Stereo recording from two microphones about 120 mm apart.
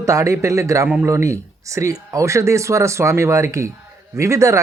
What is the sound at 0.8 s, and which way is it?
Speech, 15° right (ahead or behind).